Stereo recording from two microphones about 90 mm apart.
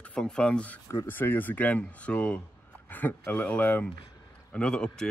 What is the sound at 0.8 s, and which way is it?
Speech, 35° left (ahead or behind).